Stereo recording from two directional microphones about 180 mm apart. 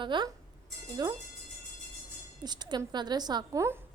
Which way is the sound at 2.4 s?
25° right (ahead or behind).